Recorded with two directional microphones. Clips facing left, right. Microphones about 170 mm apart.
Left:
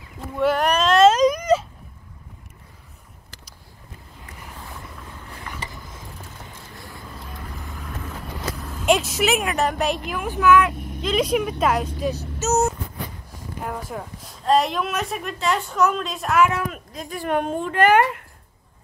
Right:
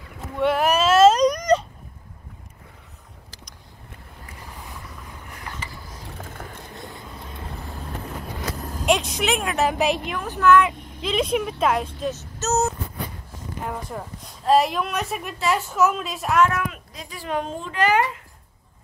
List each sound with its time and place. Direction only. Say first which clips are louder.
0.4 s cat: even; centre (ahead or behind)
6.7 s vehicle: right 2 dB; 20° right (ahead or behind)
7.7 s vehicle: right 1 dB; 35° right (ahead or behind)
8.8 s speech: left 2 dB; 5° left (ahead or behind)
12.4 s a sound: left 2 dB; centre (ahead or behind)
13.7 s speech: left 1 dB; centre (ahead or behind)
16.6 s speech: left 2 dB; 45° left (ahead or behind)